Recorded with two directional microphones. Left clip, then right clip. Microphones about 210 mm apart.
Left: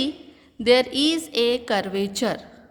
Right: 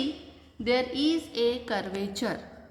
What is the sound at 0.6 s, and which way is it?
A woman's voice, 55° left (ahead or behind).